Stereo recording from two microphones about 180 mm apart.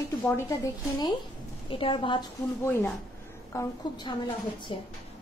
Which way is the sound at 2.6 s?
10° left (ahead or behind).